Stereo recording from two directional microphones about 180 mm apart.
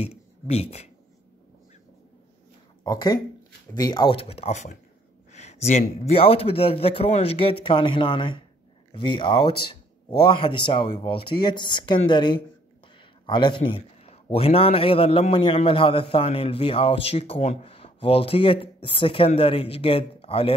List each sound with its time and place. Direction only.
0.0 s speech: 35° left (ahead or behind)
2.8 s a man's voice: 20° left (ahead or behind)